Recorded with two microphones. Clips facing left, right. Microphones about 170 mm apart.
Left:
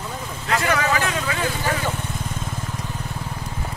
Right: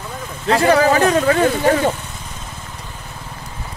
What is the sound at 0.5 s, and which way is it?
Speech, 30° right (ahead or behind).